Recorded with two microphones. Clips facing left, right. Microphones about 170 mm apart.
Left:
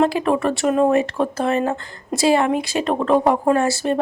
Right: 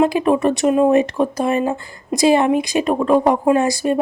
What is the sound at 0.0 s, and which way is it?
Speech, 15° right (ahead or behind).